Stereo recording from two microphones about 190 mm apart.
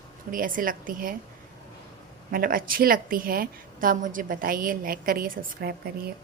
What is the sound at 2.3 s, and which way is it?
A woman's voice, 50° right (ahead or behind).